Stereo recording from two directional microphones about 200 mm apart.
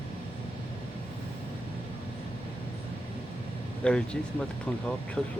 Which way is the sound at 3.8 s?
5° left (ahead or behind).